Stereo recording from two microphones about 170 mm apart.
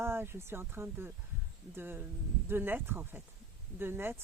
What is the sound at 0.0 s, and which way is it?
Speech, 15° right (ahead or behind).